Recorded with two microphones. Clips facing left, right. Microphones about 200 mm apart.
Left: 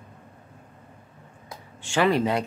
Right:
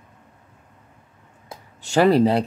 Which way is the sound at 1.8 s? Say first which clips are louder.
Right 6 dB; 40° right (ahead or behind).